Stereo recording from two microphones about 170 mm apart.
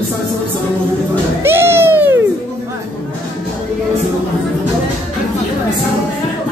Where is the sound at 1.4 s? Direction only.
15° right (ahead or behind).